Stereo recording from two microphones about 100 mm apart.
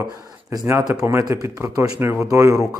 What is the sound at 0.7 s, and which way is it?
Speech, 40° right (ahead or behind).